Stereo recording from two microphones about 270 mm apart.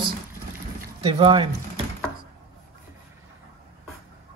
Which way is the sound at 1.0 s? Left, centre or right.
Centre.